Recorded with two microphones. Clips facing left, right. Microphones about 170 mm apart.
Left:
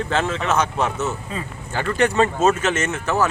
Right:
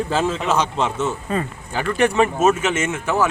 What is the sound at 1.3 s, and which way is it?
Speech, 55° right (ahead or behind).